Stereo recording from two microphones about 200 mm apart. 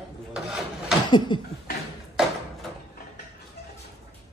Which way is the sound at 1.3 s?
25° left (ahead or behind).